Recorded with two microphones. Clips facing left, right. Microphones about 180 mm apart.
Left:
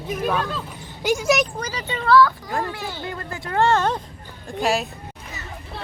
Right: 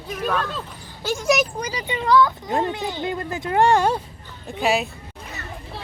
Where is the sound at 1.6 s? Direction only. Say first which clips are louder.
Right 1 dB; 10° right (ahead or behind).